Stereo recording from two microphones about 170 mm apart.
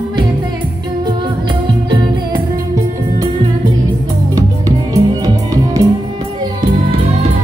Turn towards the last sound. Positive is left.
turn(degrees=-20)  # may be behind; listen again after turning